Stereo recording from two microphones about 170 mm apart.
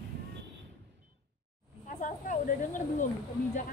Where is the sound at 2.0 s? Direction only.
50° left (ahead or behind).